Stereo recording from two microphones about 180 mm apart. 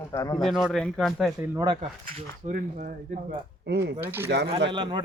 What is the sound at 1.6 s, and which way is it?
Speech, 25° right (ahead or behind).